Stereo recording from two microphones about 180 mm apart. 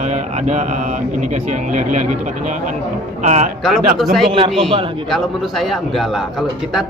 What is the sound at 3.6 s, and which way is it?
A woman's voice, centre (ahead or behind).